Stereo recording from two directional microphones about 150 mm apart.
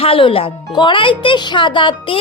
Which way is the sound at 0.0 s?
35° left (ahead or behind).